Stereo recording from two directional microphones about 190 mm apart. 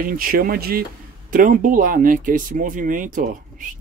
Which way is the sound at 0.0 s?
50° right (ahead or behind).